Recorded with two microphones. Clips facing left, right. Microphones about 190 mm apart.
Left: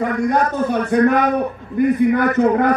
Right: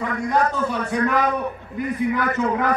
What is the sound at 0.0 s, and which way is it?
A man's voice, 55° left (ahead or behind).